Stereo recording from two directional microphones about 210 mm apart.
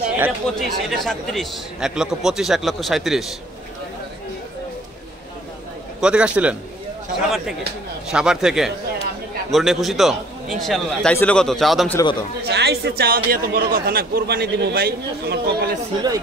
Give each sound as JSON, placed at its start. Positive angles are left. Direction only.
{"t": 0.2, "sound": "speech", "side_deg": 0}
{"t": 5.9, "sound": "speech", "side_deg": -5}
{"t": 12.0, "sound": "a man's voice", "side_deg": 20}
{"t": 12.4, "sound": "a man's voice", "side_deg": -50}